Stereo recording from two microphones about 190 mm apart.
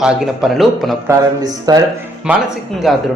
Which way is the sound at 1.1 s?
20° right (ahead or behind).